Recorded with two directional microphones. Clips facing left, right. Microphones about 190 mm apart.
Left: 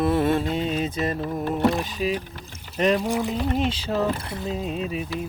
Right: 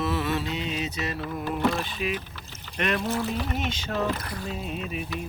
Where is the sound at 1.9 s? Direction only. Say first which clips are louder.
Left 4 dB; 35° left (ahead or behind).